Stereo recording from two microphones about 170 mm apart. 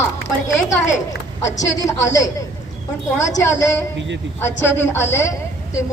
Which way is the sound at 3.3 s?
20° left (ahead or behind).